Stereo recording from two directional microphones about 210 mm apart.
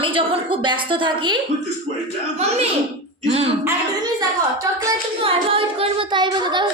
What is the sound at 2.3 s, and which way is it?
Speech, 30° right (ahead or behind).